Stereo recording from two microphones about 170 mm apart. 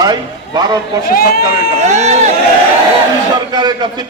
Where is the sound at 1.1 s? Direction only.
60° left (ahead or behind).